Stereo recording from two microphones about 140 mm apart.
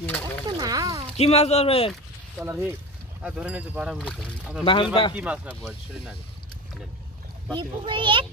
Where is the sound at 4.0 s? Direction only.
5° left (ahead or behind).